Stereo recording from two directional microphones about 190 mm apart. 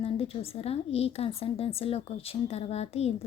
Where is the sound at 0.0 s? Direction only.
30° left (ahead or behind).